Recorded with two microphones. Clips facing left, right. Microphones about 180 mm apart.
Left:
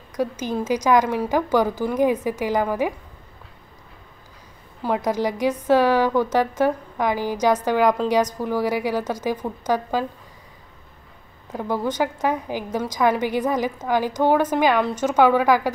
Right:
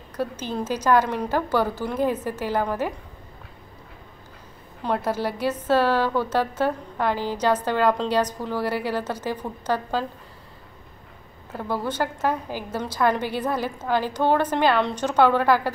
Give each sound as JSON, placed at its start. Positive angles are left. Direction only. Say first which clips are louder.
{"t": 0.1, "sound": "a woman's voice", "louder": "left 4 dB", "side_deg": 10}
{"t": 4.8, "sound": "a woman's voice", "louder": "left 3 dB", "side_deg": 10}
{"t": 11.5, "sound": "a woman's voice", "louder": "left 3 dB", "side_deg": 15}